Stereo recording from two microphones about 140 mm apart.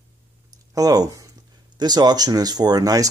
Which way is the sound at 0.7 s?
25° right (ahead or behind).